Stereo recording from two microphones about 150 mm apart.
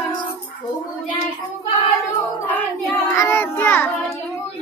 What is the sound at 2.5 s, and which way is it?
Child singing, 15° left (ahead or behind).